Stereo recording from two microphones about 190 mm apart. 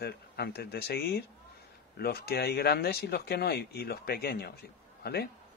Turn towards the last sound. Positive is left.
turn(degrees=60)  # may be behind; listen again after turning